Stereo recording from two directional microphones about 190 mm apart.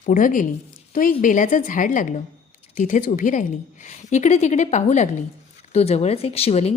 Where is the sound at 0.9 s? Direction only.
45° left (ahead or behind).